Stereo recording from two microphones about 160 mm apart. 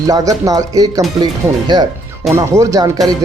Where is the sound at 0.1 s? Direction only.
20° right (ahead or behind).